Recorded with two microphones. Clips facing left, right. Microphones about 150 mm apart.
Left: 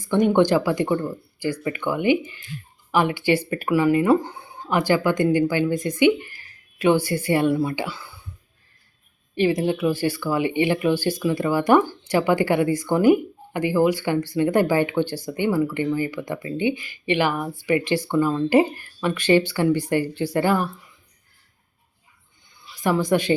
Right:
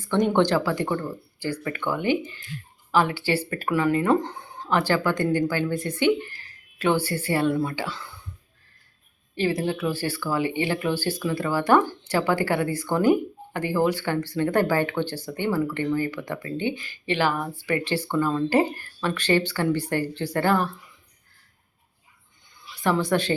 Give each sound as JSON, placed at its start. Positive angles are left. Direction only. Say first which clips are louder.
{"t": 0.0, "sound": "speech", "louder": "left 3 dB", "side_deg": 10}
{"t": 9.3, "sound": "speech", "louder": "left 4 dB", "side_deg": 15}
{"t": 22.8, "sound": "speech", "louder": "left 2 dB", "side_deg": 15}